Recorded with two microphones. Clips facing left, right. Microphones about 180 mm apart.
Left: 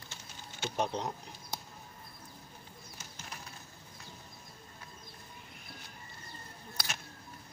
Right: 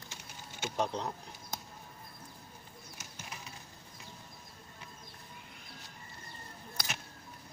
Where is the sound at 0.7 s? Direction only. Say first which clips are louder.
Even; 20° left (ahead or behind).